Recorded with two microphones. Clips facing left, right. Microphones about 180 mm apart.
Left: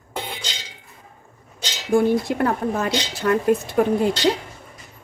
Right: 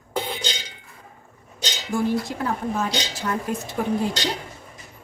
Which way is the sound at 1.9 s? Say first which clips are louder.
Left 6 dB; 60° left (ahead or behind).